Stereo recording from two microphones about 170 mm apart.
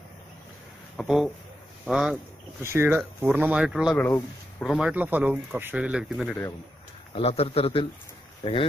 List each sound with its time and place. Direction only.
0.9 s speech: centre (ahead or behind)
2.6 s speech: 15° right (ahead or behind)
3.9 s speech: 10° left (ahead or behind)
4.6 s speech: 5° right (ahead or behind)
7.2 s speech: 35° left (ahead or behind)